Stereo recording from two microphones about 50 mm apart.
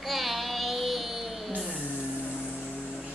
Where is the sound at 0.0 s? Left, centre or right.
Centre.